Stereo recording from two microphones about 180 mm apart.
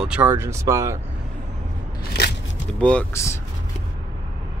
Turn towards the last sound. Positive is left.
turn(degrees=15)  # may be behind; listen again after turning